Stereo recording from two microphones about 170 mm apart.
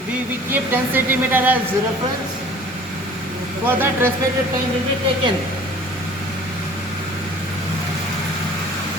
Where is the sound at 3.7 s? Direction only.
10° right (ahead or behind).